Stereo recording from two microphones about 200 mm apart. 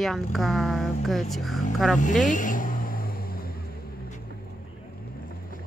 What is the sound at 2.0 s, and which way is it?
Vehicle, 40° left (ahead or behind).